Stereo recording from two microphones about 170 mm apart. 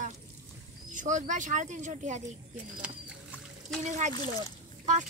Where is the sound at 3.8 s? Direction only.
45° right (ahead or behind).